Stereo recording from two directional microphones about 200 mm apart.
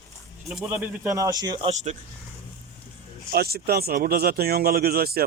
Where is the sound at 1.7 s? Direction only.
35° right (ahead or behind).